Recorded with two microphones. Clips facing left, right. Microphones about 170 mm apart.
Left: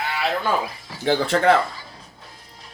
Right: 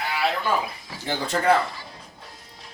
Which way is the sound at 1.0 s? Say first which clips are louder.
Left 4 dB; 90° left.